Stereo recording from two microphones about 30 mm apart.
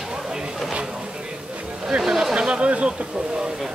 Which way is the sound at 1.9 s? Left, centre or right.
Centre.